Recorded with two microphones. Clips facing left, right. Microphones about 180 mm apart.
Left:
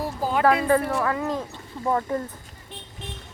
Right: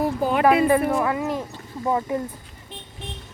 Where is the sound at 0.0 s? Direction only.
65° right (ahead or behind).